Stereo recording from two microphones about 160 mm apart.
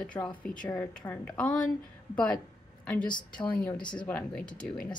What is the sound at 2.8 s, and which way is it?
A woman's voice, 5° left (ahead or behind).